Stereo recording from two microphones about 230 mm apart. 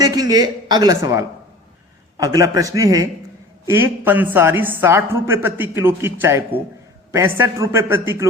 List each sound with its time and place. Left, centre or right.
0.0 s a woman's voice: centre